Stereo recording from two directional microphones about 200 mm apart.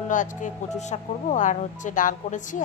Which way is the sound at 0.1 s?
40° left (ahead or behind).